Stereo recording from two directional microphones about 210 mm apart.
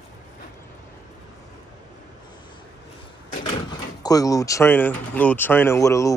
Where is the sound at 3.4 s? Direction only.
20° left (ahead or behind).